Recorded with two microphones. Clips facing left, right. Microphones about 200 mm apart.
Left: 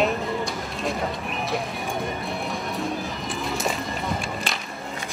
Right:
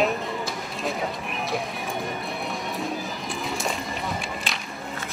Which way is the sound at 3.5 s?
Centre (ahead or behind).